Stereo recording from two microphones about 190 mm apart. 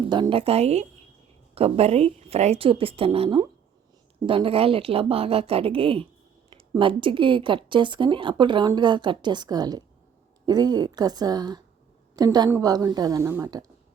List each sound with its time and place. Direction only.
0.1 s a woman's voice: 25° right (ahead or behind)